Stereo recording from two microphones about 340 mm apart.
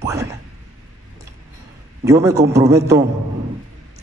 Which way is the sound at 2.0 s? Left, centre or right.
Centre.